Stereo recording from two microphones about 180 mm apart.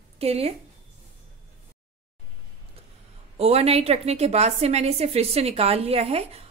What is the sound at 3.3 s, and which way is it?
A woman's voice, 35° right (ahead or behind).